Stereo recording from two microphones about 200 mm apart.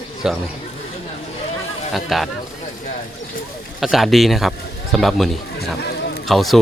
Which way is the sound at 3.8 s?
Centre (ahead or behind).